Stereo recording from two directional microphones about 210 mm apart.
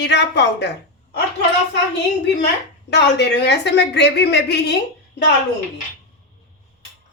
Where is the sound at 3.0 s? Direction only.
55° left (ahead or behind).